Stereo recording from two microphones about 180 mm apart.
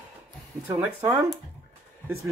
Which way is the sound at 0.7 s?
15° right (ahead or behind).